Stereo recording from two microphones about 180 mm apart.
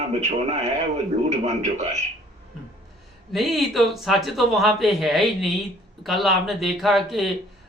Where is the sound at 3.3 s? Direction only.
Centre (ahead or behind).